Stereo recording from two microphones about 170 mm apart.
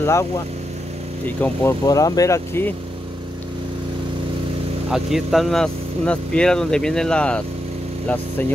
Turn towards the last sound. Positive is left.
turn(degrees=5)  # may be behind; listen again after turning